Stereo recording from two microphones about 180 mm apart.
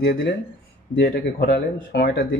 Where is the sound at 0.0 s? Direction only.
60° left (ahead or behind).